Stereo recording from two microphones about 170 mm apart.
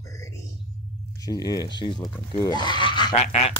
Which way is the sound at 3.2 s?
40° left (ahead or behind).